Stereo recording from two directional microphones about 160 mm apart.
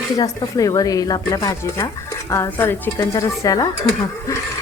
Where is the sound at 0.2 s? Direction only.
20° left (ahead or behind).